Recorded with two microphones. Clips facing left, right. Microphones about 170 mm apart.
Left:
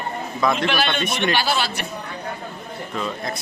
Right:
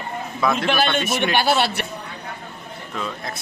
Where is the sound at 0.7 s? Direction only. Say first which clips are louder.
Right 2 dB; 45° right (ahead or behind).